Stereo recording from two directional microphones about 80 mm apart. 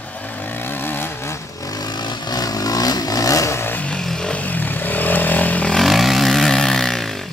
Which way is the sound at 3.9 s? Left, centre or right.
Centre.